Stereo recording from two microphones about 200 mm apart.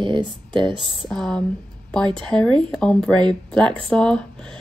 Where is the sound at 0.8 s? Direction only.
Centre (ahead or behind).